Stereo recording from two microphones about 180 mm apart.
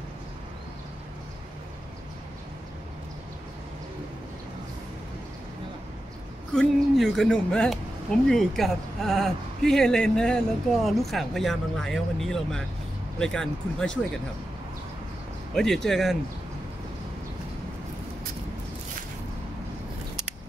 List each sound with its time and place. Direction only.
6.5 s speech: 5° left (ahead or behind)
15.5 s speech: centre (ahead or behind)